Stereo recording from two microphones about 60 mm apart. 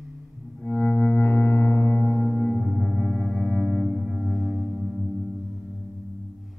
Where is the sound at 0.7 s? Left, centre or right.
Left.